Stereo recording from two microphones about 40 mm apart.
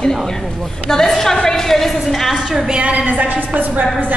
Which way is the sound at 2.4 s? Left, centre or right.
Centre.